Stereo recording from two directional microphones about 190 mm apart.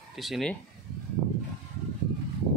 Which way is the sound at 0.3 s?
5° left (ahead or behind).